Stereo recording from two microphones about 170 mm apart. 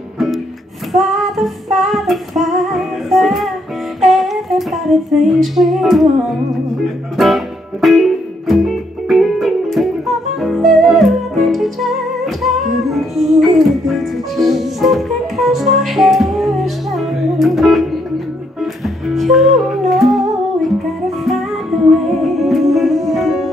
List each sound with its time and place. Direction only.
0.9 s female singing: centre (ahead or behind)
4.0 s humming: centre (ahead or behind)
7.2 s music: centre (ahead or behind)